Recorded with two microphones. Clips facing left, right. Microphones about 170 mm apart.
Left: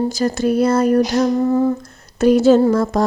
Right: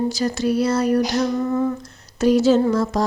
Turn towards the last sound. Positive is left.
turn(degrees=55)  # may be behind; listen again after turning